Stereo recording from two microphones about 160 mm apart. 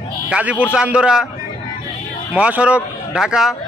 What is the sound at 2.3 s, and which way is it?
Speech, 10° right (ahead or behind).